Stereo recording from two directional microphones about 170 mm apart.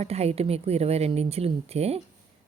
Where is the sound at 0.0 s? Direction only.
40° right (ahead or behind).